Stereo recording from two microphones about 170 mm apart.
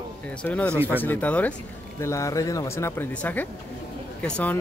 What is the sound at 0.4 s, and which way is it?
Speech, 10° left (ahead or behind).